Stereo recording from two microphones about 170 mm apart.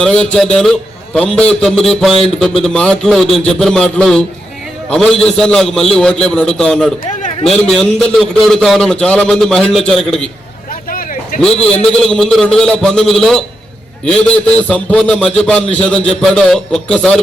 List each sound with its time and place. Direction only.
0.0 s a man's voice: 5° left (ahead or behind)
10.8 s a sound: 55° left (ahead or behind)
11.9 s a man's voice: 5° left (ahead or behind)